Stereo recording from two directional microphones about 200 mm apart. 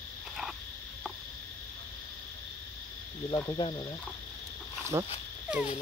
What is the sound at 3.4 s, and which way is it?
Speech, 20° left (ahead or behind).